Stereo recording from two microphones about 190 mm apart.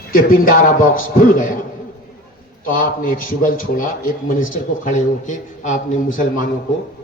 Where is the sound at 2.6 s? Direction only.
45° left (ahead or behind).